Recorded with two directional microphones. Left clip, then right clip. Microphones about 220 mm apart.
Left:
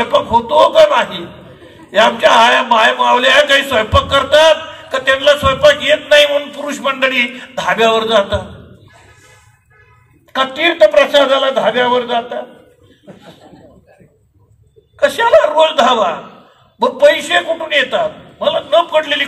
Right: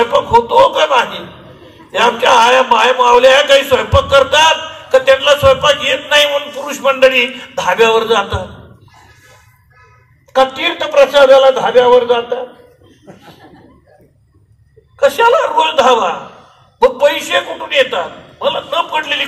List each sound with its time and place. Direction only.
0.5 s a man's voice: 30° left (ahead or behind)
10.3 s a man's voice: 35° left (ahead or behind)
15.0 s a man's voice: 35° left (ahead or behind)